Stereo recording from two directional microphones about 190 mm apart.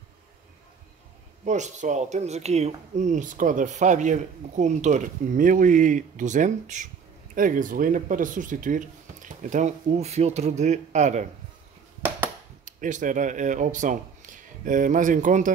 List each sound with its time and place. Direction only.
1.4 s speech: 40° right (ahead or behind)
12.6 s speech: 40° right (ahead or behind)